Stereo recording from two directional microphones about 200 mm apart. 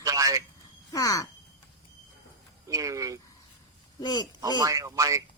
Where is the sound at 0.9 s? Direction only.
20° left (ahead or behind).